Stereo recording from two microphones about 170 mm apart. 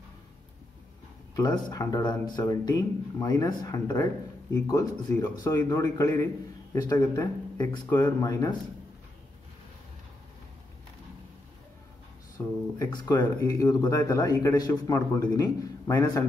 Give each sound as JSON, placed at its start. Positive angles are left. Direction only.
{"t": 1.3, "sound": "a man's voice", "side_deg": 25}
{"t": 12.4, "sound": "speech", "side_deg": 15}